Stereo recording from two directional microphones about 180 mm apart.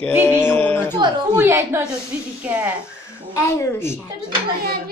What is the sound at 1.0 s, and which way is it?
Speech, 25° right (ahead or behind).